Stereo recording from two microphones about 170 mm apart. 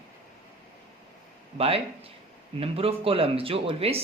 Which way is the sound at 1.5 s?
35° right (ahead or behind).